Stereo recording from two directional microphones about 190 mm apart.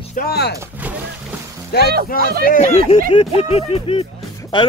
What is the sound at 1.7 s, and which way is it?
Speech, 55° left (ahead or behind).